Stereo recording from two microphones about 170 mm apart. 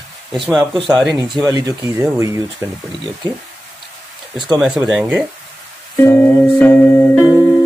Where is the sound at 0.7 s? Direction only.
25° right (ahead or behind).